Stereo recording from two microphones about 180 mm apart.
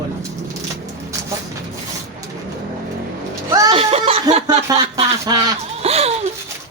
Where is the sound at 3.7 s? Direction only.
35° right (ahead or behind).